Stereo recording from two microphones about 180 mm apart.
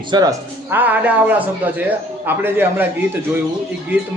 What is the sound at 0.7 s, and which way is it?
Speech, 10° right (ahead or behind).